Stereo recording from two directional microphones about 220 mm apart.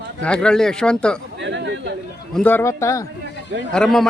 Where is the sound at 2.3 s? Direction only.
10° left (ahead or behind).